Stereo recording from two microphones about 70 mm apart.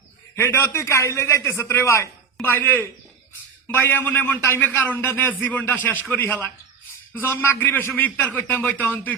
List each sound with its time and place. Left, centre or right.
0.3 s a man's voice: left
2.5 s a man's voice: left